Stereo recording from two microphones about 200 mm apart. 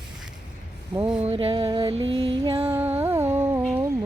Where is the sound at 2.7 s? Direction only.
10° right (ahead or behind).